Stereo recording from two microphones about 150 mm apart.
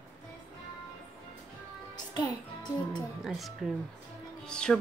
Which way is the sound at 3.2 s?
Centre (ahead or behind).